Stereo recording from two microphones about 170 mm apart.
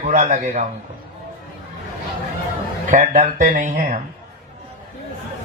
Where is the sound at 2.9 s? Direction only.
50° right (ahead or behind).